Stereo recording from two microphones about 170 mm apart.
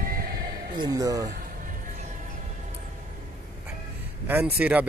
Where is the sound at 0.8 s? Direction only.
20° right (ahead or behind).